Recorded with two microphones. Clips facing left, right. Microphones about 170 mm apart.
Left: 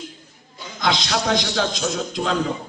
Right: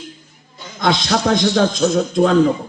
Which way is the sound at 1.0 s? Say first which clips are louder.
Right 6 dB; 40° right (ahead or behind).